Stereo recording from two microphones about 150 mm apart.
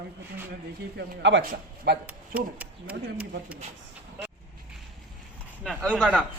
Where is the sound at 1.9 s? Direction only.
90° right.